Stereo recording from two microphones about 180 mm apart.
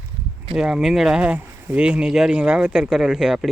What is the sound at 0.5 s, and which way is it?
Speech, 5° right (ahead or behind).